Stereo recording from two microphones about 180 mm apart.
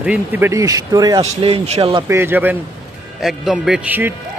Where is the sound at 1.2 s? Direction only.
35° right (ahead or behind).